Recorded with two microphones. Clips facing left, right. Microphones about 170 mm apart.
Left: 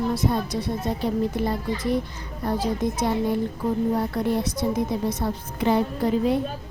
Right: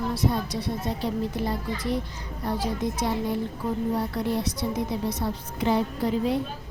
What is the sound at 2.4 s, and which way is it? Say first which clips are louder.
Speech: left 3 dB; 50° left (ahead or behind).